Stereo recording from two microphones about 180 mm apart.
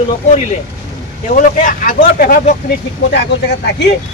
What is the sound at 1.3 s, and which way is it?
Speech, 50° left (ahead or behind).